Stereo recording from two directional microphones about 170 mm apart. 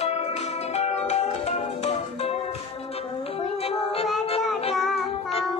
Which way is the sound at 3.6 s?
35° left (ahead or behind).